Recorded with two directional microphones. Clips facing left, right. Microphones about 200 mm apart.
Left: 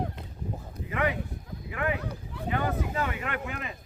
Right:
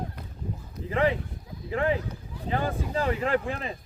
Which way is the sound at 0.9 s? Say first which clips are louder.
Right 4 dB; 30° right (ahead or behind).